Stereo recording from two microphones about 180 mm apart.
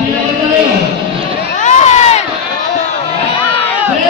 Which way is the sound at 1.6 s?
40° left (ahead or behind).